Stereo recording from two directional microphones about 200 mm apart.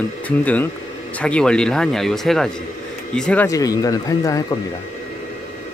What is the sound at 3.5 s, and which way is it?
Speech, 15° left (ahead or behind).